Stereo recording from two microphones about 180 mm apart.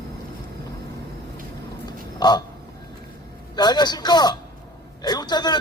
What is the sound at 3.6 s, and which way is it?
Speech, 25° left (ahead or behind).